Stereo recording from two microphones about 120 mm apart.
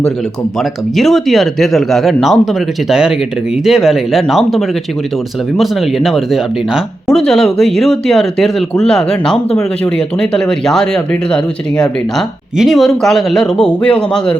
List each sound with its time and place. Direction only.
0.6 s speech: centre (ahead or behind)